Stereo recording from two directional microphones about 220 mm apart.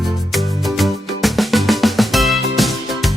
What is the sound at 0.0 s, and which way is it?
Music, centre (ahead or behind).